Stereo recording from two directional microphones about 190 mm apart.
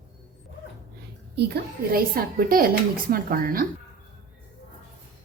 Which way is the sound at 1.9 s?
50° right (ahead or behind).